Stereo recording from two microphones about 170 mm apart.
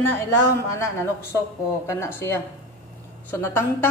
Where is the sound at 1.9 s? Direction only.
15° left (ahead or behind).